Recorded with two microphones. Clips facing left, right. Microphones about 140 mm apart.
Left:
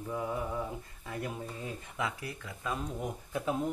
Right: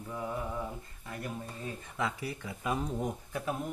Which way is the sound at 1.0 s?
10° left (ahead or behind).